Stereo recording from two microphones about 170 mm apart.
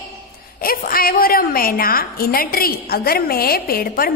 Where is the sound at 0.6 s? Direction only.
60° left (ahead or behind).